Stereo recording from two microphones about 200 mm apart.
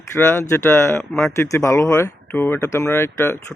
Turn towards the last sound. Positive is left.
turn(degrees=10)  # may be behind; listen again after turning